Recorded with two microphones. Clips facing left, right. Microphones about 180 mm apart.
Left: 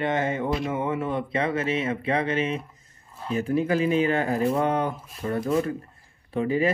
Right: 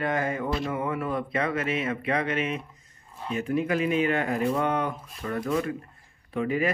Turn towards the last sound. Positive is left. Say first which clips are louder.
# left 3 dB
turn(degrees=30)  # may be behind; listen again after turning